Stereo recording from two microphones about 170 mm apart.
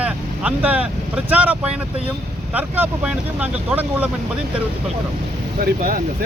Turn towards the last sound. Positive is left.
turn(degrees=-60)  # may be behind; listen again after turning